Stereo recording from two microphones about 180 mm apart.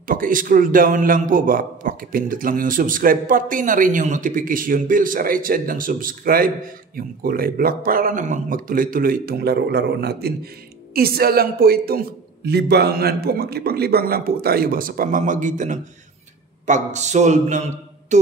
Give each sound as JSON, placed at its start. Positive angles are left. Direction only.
{"t": 0.0, "sound": "a man's voice", "side_deg": -50}
{"t": 18.1, "sound": "music", "side_deg": -40}